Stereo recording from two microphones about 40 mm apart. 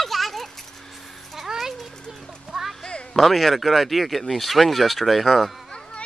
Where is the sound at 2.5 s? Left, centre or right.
Centre.